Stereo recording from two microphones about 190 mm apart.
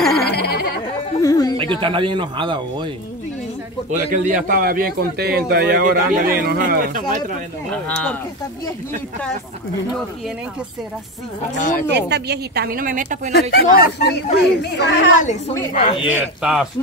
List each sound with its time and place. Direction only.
0.2 s a sound: 55° left (ahead or behind)
1.2 s a sound: 20° left (ahead or behind)
1.6 s speech: 25° right (ahead or behind)
4.1 s a man's voice: 45° right (ahead or behind)
7.8 s speech: 10° left (ahead or behind)
11.5 s a woman's voice: 40° left (ahead or behind)
11.9 s a man's voice: 60° right (ahead or behind); by 13.3 s 45° right (ahead or behind)
13.3 s speech: 60° left (ahead or behind)
15.7 s speech: 30° left (ahead or behind)
16.1 s speech: 5° right (ahead or behind)